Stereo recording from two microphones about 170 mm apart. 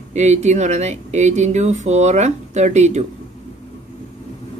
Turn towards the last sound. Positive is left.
turn(degrees=-40)  # may be behind; listen again after turning